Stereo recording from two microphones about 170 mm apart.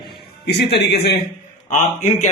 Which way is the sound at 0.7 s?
75° left (ahead or behind).